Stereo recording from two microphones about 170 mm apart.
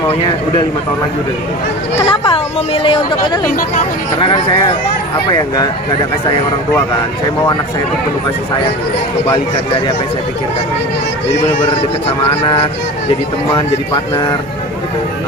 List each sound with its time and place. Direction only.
2.0 s a woman's voice: 30° left (ahead or behind)